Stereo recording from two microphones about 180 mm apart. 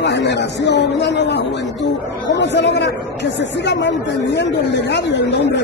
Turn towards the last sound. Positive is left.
turn(degrees=75)  # may be behind; listen again after turning